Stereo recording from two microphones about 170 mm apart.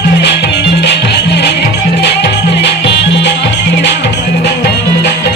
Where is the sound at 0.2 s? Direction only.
90° left.